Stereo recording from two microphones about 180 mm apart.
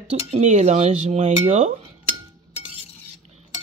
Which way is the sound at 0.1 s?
35° right (ahead or behind).